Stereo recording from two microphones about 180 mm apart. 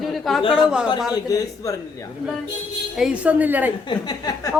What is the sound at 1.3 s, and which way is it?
Speech, 20° left (ahead or behind).